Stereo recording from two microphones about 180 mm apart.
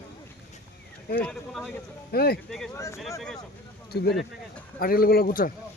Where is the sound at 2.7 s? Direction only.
15° left (ahead or behind).